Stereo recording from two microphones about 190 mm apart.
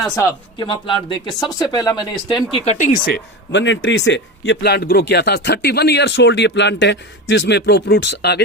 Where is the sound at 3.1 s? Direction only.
60° left (ahead or behind).